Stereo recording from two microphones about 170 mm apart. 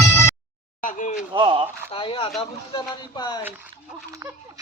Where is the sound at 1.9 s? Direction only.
30° left (ahead or behind).